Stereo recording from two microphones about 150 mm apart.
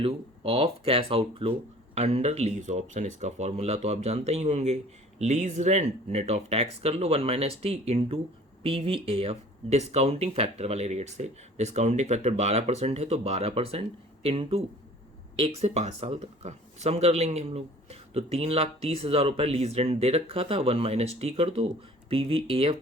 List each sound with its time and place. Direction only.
0.0 s speech: 40° right (ahead or behind)